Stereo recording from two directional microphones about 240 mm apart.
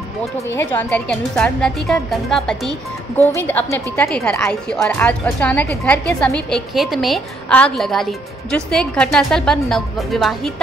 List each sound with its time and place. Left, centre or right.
0.2 s a woman's voice: centre